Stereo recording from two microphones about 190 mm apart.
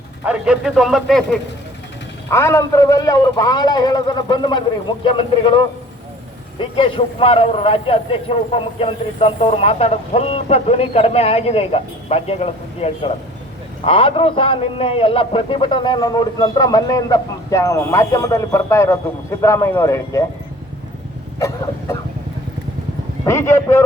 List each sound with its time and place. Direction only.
0.3 s speech: 5° right (ahead or behind)
2.3 s a man's voice: 15° left (ahead or behind)
21.3 s vehicle: 15° left (ahead or behind)
23.2 s speech: 15° left (ahead or behind)